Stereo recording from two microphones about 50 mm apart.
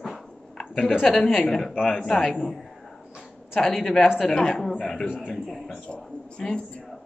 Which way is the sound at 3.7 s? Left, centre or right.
Centre.